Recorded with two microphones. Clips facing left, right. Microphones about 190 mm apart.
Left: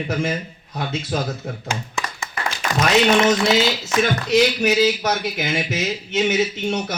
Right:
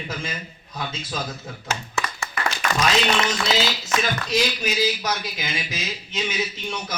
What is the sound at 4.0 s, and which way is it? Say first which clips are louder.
A man's voice: left 9 dB; 65° left (ahead or behind).